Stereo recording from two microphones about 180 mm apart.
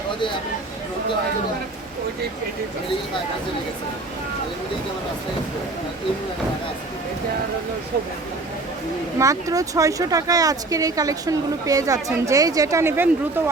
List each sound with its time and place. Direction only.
9.1 s speech: 20° right (ahead or behind)